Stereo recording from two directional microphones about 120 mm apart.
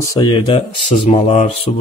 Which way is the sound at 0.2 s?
45° left (ahead or behind).